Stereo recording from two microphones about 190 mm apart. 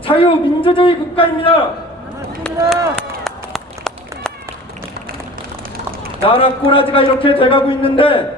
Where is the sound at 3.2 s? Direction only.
Centre (ahead or behind).